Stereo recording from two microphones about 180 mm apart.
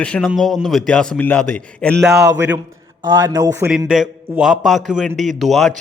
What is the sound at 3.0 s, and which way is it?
Speech, 20° right (ahead or behind).